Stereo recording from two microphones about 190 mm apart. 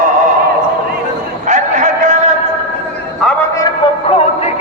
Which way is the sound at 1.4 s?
40° right (ahead or behind).